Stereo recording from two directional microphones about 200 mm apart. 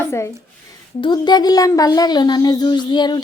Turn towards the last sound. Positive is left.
turn(degrees=20)  # may be behind; listen again after turning